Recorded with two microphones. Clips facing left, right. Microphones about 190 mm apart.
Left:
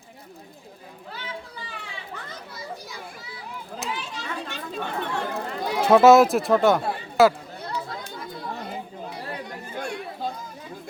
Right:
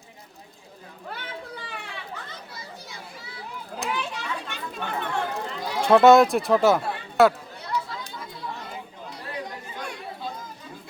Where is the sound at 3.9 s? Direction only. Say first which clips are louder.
Right 3 dB; 60° right (ahead or behind).